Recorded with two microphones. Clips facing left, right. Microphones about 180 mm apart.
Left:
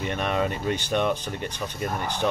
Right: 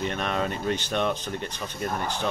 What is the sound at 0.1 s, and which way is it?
Speech, 10° left (ahead or behind).